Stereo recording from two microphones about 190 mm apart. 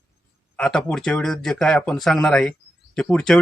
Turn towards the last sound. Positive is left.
turn(degrees=5)  # may be behind; listen again after turning